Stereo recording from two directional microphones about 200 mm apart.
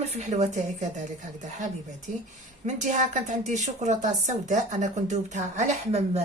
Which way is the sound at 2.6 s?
35° right (ahead or behind).